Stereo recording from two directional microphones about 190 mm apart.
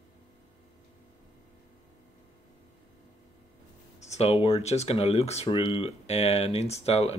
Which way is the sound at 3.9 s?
35° left (ahead or behind).